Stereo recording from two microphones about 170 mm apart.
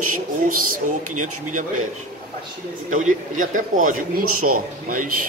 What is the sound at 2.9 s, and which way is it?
Speech, 50° right (ahead or behind).